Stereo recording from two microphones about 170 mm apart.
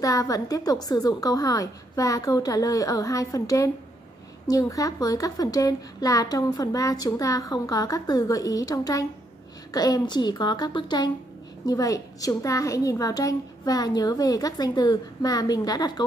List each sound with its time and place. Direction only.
0.0 s a woman's voice: 20° left (ahead or behind)